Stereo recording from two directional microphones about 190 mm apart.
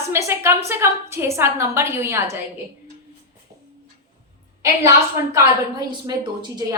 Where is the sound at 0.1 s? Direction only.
15° right (ahead or behind).